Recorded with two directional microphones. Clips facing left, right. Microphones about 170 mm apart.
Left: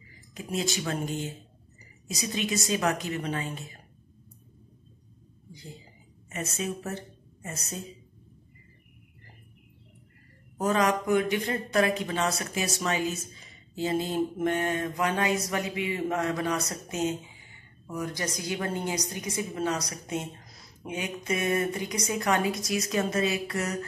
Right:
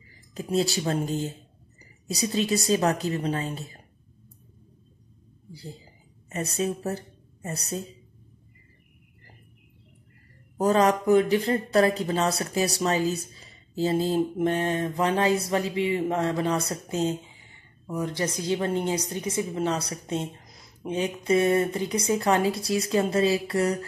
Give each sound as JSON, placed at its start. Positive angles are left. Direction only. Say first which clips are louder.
{"t": 0.3, "sound": "speech", "louder": "right 6 dB", "side_deg": -35}
{"t": 5.5, "sound": "a sound", "louder": "right 4 dB", "side_deg": -35}
{"t": 6.2, "sound": "a woman's voice", "louder": "right 5 dB", "side_deg": -35}
{"t": 10.6, "sound": "a woman's voice", "louder": "right 4 dB", "side_deg": -35}